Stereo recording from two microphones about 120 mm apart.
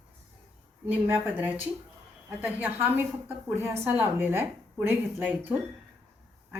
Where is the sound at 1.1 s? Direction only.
10° right (ahead or behind).